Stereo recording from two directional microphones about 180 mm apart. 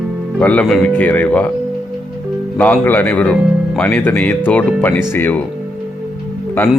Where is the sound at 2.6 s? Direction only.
10° left (ahead or behind).